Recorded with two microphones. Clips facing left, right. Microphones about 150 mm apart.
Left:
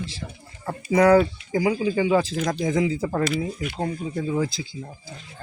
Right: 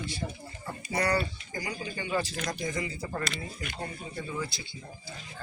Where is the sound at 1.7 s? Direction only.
90° left.